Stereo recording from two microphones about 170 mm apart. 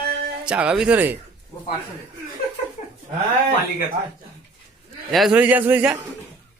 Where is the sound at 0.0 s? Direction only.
65° right (ahead or behind).